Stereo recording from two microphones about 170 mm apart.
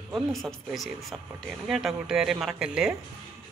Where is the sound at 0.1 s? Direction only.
Centre (ahead or behind).